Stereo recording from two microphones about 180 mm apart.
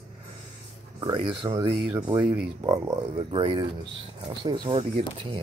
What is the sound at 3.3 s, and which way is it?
Speech, 30° right (ahead or behind).